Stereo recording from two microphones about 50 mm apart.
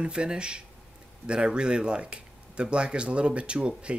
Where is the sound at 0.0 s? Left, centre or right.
Centre.